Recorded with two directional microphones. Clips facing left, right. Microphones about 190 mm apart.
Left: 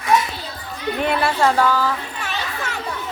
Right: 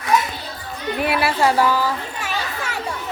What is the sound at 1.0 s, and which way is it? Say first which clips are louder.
Speech: even; 10° right (ahead or behind).